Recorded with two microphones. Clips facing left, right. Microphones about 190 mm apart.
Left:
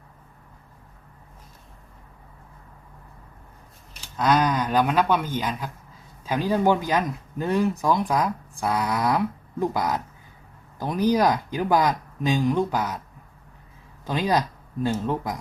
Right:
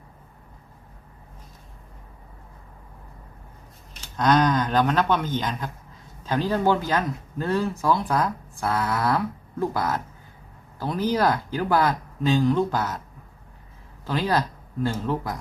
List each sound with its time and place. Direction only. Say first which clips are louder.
4.2 s speech: right 1 dB; 10° left (ahead or behind)
14.0 s speech: left 1 dB; 15° left (ahead or behind)